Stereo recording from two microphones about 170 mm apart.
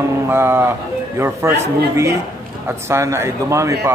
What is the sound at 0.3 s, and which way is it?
Speech, 15° right (ahead or behind).